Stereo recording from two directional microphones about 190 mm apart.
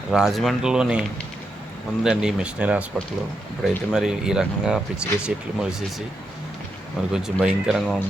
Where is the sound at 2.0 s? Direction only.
5° right (ahead or behind).